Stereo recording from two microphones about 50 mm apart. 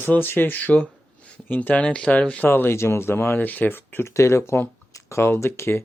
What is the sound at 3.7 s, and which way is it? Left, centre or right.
Speech, left.